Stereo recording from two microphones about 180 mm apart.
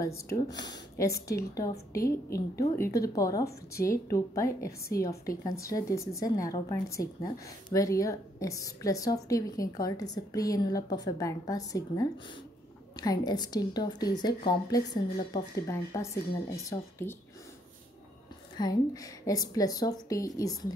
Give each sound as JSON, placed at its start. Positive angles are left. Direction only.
{"t": 0.0, "sound": "a woman's voice", "side_deg": 15}
{"t": 18.6, "sound": "a woman's voice", "side_deg": 20}